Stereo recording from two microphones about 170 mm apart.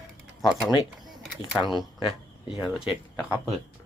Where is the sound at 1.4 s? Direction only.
25° left (ahead or behind).